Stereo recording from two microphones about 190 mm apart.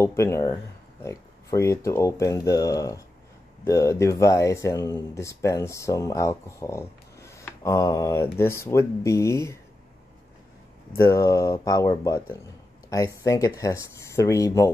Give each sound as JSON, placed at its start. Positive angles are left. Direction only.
{"t": 0.0, "sound": "speech", "side_deg": 15}
{"t": 11.0, "sound": "speech", "side_deg": 15}